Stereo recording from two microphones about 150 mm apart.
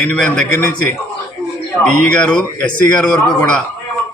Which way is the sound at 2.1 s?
5° left (ahead or behind).